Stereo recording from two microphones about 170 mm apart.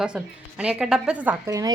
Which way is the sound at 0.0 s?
5° right (ahead or behind).